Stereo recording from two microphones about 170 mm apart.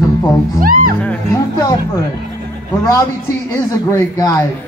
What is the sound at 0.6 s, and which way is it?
Music, 55° right (ahead or behind).